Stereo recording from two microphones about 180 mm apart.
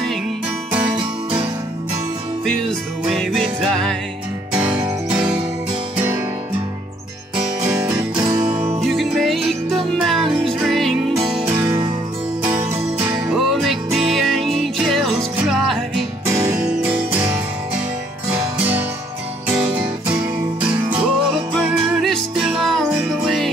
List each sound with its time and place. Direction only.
2.4 s music: centre (ahead or behind)
7.8 s music: 5° right (ahead or behind)
11.6 s music: 20° right (ahead or behind)
13.3 s music: centre (ahead or behind)
16.3 s music: 15° right (ahead or behind)
19.4 s music: 10° right (ahead or behind)